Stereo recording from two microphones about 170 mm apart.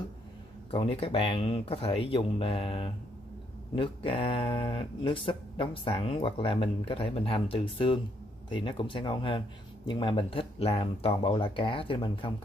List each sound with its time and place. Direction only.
0.7 s speech: 35° left (ahead or behind)